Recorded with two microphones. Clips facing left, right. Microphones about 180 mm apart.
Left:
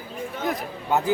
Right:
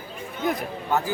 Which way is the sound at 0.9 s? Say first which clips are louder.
Left 3 dB; 20° left (ahead or behind).